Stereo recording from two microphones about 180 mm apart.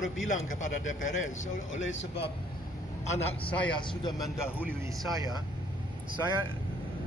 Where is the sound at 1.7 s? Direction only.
90° left.